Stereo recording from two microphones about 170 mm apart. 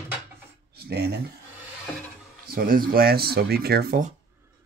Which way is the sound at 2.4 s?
60° right (ahead or behind).